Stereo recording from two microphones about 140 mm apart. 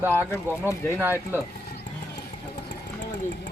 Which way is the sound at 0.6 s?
20° left (ahead or behind).